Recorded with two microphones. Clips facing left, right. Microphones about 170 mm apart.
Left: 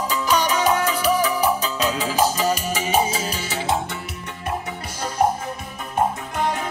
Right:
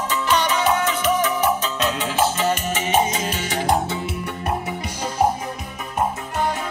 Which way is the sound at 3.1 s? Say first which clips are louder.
Right 1 dB; 35° left (ahead or behind).